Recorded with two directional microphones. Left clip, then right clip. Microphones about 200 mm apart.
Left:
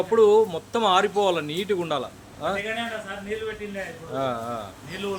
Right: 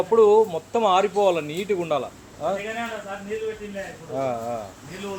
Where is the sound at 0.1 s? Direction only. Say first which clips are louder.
Right 1 dB; centre (ahead or behind).